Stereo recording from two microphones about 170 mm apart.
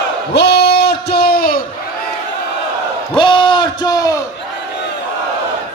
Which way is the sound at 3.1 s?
30° left (ahead or behind).